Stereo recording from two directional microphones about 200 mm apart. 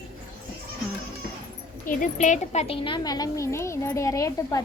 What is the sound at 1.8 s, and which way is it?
A woman's voice, 40° left (ahead or behind).